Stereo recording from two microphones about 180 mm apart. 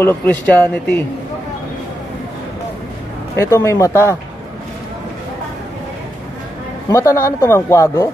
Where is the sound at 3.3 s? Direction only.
15° left (ahead or behind).